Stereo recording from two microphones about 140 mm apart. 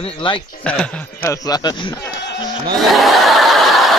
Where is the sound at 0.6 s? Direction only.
10° left (ahead or behind).